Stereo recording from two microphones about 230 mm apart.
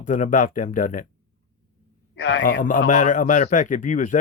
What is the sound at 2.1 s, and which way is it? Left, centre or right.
Speech, left.